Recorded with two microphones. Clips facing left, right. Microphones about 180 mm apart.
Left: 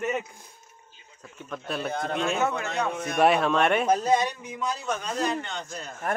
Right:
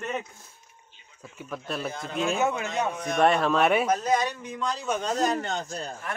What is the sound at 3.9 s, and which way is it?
Speech, 25° left (ahead or behind).